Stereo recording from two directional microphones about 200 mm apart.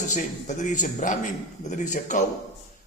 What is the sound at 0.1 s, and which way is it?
A man's voice, 40° left (ahead or behind).